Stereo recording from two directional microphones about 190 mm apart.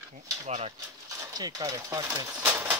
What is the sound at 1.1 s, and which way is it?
Speech, 20° right (ahead or behind).